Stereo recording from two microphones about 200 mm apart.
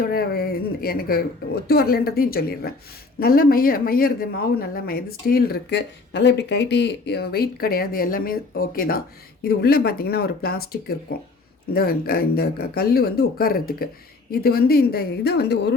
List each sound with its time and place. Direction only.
0.0 s speech: 50° left (ahead or behind)